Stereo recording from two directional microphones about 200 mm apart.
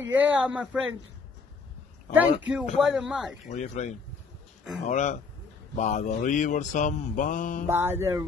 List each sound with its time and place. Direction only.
0.0 s speech: 5° right (ahead or behind)
2.1 s speech: 5° right (ahead or behind)
3.4 s mantra: 35° left (ahead or behind)
7.6 s speech: 15° right (ahead or behind)